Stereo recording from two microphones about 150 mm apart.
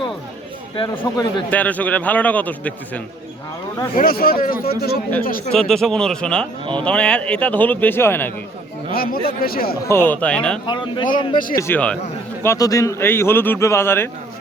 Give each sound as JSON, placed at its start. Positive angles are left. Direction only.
{"t": 1.0, "sound": "speech", "side_deg": 25}
{"t": 1.5, "sound": "a man's voice", "side_deg": 10}
{"t": 3.9, "sound": "a man's voice", "side_deg": 80}
{"t": 5.5, "sound": "a man's voice", "side_deg": 5}
{"t": 8.9, "sound": "a man's voice", "side_deg": 80}
{"t": 9.9, "sound": "a man's voice", "side_deg": 15}
{"t": 10.7, "sound": "speech", "side_deg": 30}
{"t": 11.3, "sound": "speech", "side_deg": 65}
{"t": 11.6, "sound": "a man's voice", "side_deg": 10}